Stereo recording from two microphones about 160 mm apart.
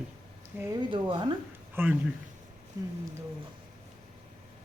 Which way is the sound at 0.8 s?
30° right (ahead or behind).